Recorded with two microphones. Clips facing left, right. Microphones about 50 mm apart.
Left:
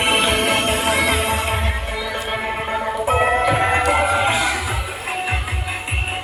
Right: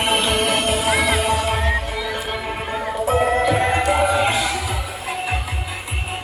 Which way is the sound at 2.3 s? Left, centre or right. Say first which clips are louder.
Left 3 dB; left.